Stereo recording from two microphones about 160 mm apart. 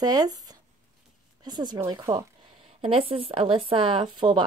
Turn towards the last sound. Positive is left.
turn(degrees=-30)  # may be behind; listen again after turning